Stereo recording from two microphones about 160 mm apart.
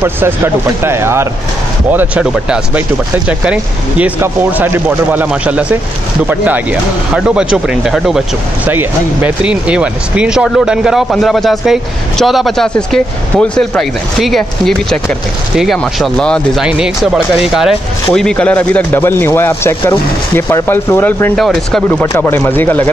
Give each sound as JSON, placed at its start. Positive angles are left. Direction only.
{"t": 0.8, "sound": "speech", "side_deg": -15}
{"t": 4.0, "sound": "speech", "side_deg": -15}
{"t": 21.4, "sound": "speech", "side_deg": 0}
{"t": 22.1, "sound": "speech", "side_deg": 15}